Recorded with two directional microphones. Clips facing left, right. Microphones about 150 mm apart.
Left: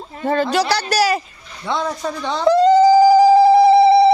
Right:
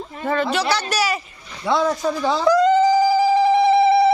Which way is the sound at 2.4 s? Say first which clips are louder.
Left 4 dB; 30° left (ahead or behind).